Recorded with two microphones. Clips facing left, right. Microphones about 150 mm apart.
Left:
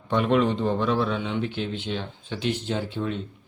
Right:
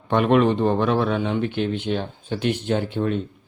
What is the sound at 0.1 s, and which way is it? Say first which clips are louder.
Speech: right 4 dB; 60° right (ahead or behind).